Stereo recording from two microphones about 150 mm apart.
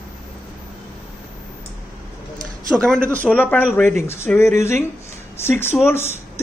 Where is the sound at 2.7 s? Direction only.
5° left (ahead or behind).